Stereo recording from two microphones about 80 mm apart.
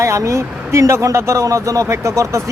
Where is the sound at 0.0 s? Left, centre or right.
Right.